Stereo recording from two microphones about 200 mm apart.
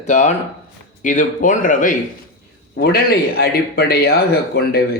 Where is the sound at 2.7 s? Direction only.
50° left (ahead or behind).